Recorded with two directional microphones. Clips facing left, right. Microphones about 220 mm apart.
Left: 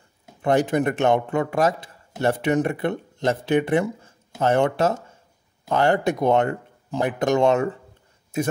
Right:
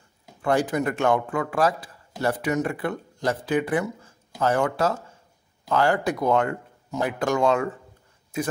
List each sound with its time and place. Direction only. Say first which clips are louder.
0.4 s speech: left 3 dB; 20° left (ahead or behind)